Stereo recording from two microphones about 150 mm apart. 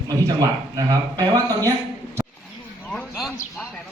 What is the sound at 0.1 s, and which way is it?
Speech, 25° right (ahead or behind).